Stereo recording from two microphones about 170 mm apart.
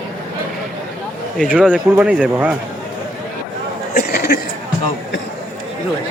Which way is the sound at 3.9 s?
70° left (ahead or behind).